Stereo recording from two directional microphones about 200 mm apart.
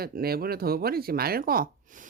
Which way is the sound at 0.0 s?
50° right (ahead or behind).